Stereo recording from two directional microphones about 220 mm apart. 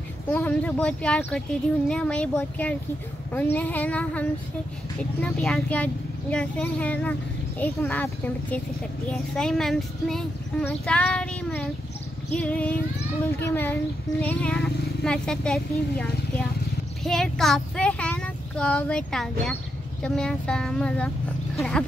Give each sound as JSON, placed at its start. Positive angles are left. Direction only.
{"t": 0.3, "sound": "speech", "side_deg": 5}